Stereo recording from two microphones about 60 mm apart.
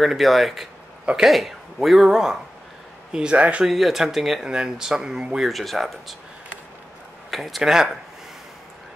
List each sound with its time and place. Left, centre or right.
0.0 s speech: centre; by 3.6 s right
3.6 s speech: centre
5.5 s speech: centre
7.2 s speech: centre